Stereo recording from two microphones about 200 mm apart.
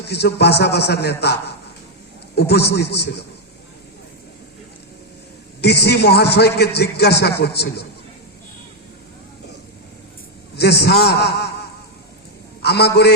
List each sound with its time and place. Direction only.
0.1 s a man's voice: 55° left (ahead or behind)
5.6 s a man's voice: 55° left (ahead or behind)
10.6 s a man's voice: 55° left (ahead or behind)
12.6 s a man's voice: 55° left (ahead or behind)